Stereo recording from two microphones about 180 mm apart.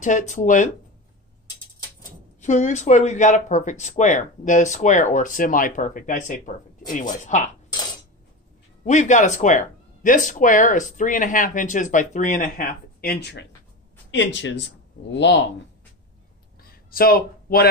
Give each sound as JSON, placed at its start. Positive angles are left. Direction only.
{"t": 0.0, "sound": "speech", "side_deg": 45}
{"t": 2.4, "sound": "speech", "side_deg": 40}
{"t": 8.8, "sound": "speech", "side_deg": 40}
{"t": 14.1, "sound": "speech", "side_deg": 90}
{"t": 15.1, "sound": "speech", "side_deg": 80}
{"t": 16.6, "sound": "a sound", "side_deg": 55}